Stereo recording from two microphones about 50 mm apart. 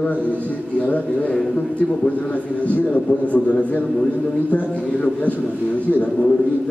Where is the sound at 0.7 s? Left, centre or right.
Left.